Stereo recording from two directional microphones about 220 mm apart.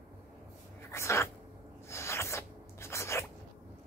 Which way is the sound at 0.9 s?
10° left (ahead or behind).